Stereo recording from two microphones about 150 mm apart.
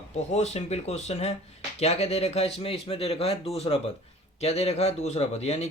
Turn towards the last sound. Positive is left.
turn(degrees=45)  # may be behind; listen again after turning